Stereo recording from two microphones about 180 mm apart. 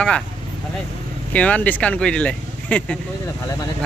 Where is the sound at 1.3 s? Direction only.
10° left (ahead or behind).